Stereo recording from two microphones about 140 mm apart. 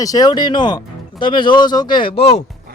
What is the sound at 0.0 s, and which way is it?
Speech, 25° left (ahead or behind).